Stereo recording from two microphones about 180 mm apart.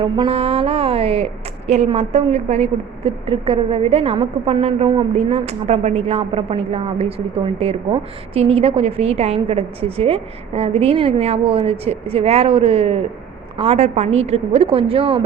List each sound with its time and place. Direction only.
0.0 s a woman's voice: 30° right (ahead or behind)